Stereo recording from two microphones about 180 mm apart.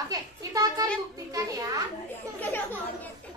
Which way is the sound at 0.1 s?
20° right (ahead or behind).